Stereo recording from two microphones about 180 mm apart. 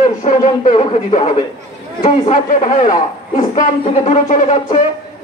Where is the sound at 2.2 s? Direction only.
45° left (ahead or behind).